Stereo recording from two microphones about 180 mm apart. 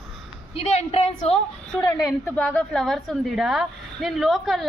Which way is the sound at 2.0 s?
10° left (ahead or behind).